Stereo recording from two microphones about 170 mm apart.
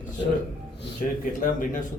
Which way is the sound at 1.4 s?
50° left (ahead or behind).